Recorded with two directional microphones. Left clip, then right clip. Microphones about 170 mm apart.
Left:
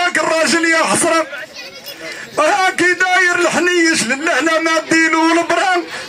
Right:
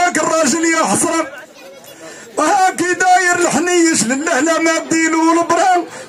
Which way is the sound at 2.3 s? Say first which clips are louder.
Even; 30° right (ahead or behind).